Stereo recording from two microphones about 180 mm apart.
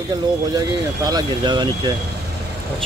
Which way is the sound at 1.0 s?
20° right (ahead or behind).